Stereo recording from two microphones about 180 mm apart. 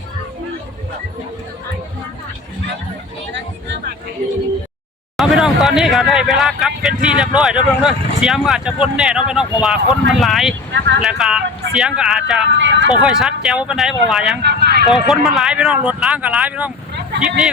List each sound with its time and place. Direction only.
5.1 s speech: centre (ahead or behind)
12.5 s speech: 90° right
13.0 s speech: 5° right (ahead or behind)
14.4 s speech: 60° right (ahead or behind)
14.8 s speech: centre (ahead or behind)